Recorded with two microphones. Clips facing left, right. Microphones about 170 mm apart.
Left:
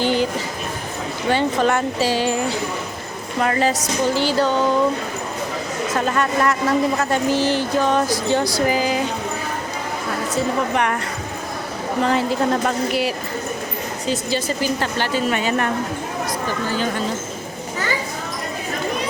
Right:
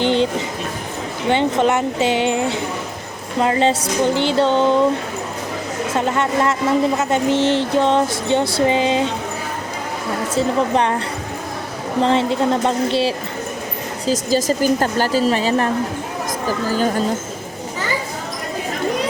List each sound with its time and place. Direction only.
0.0 s a sound: 25° right (ahead or behind)
1.3 s speech: 20° right (ahead or behind)
5.9 s speech: 20° right (ahead or behind)
10.3 s speech: 30° right (ahead or behind)
12.0 s speech: 25° right (ahead or behind)
14.1 s speech: 40° right (ahead or behind)